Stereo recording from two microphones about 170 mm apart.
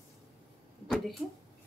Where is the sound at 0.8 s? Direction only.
Centre (ahead or behind).